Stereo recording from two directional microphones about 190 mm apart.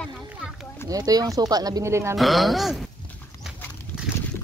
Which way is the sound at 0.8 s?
20° right (ahead or behind).